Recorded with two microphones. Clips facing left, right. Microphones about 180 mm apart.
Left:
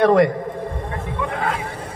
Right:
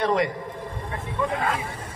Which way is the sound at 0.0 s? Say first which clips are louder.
Left 9 dB; 50° left (ahead or behind).